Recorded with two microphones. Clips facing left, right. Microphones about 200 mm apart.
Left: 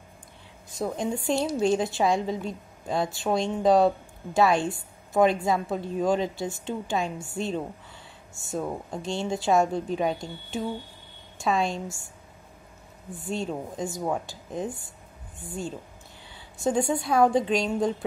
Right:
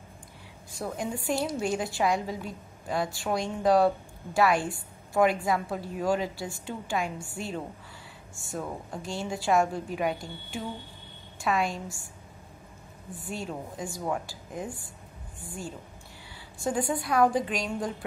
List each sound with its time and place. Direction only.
0.7 s a woman's voice: 20° left (ahead or behind)
13.3 s a woman's voice: 25° left (ahead or behind)
16.5 s a woman's voice: 25° left (ahead or behind)